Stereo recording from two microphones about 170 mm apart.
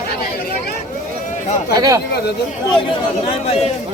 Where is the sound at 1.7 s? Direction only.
20° right (ahead or behind).